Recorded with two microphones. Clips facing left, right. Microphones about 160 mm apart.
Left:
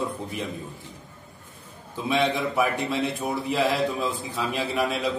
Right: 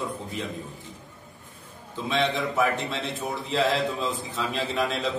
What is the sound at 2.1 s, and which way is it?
A man's voice, 15° left (ahead or behind).